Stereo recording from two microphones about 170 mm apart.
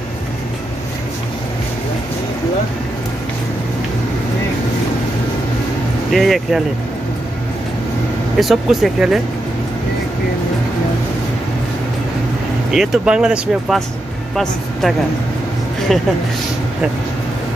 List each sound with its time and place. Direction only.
6.1 s speech: centre (ahead or behind)
8.4 s speech: centre (ahead or behind)
12.7 s a woman's voice: centre (ahead or behind)